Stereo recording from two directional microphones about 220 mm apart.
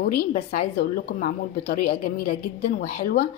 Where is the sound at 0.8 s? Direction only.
45° left (ahead or behind).